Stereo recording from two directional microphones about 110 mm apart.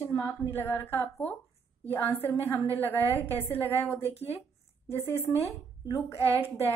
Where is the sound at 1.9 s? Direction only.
20° left (ahead or behind).